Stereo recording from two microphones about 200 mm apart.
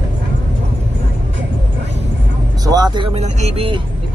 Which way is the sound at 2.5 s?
20° right (ahead or behind).